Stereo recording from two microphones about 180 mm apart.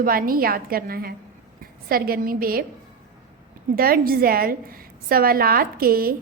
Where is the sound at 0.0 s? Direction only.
50° right (ahead or behind).